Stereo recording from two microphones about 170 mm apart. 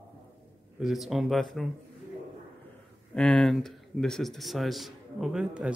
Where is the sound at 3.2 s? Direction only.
5° left (ahead or behind).